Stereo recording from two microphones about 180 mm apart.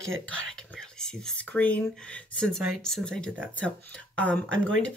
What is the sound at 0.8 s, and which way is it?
Speech, 5° left (ahead or behind).